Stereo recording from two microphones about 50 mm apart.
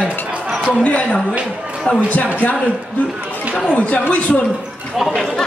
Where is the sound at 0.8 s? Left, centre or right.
Left.